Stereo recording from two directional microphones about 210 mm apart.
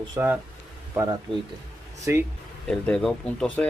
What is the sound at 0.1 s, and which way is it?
Speech, 10° right (ahead or behind).